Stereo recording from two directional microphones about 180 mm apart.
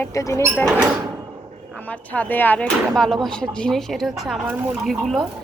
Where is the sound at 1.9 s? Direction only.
10° left (ahead or behind).